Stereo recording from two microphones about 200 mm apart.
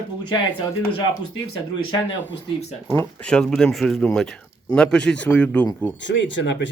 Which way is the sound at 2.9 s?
5° left (ahead or behind).